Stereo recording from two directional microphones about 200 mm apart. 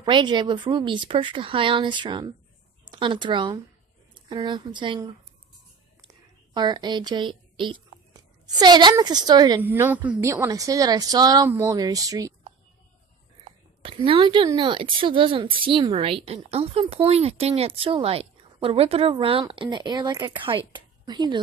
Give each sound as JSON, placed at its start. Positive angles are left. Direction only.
{"t": 0.0, "sound": "a woman's voice", "side_deg": -20}
{"t": 6.5, "sound": "speech", "side_deg": -20}
{"t": 9.6, "sound": "speech", "side_deg": -10}
{"t": 13.4, "sound": "a woman's voice", "side_deg": -25}